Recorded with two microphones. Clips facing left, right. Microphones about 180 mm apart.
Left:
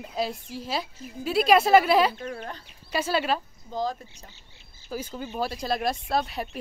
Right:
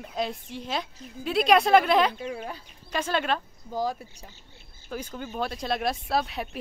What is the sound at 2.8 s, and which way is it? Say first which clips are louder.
Speech: left 1 dB; 5° left (ahead or behind).